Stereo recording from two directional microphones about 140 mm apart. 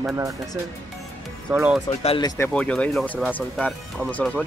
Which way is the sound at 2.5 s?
10° left (ahead or behind).